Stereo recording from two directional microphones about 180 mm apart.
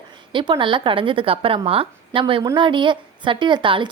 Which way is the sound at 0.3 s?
25° right (ahead or behind).